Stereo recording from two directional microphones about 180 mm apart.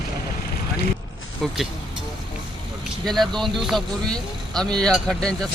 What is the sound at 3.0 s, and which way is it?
Speech, centre (ahead or behind).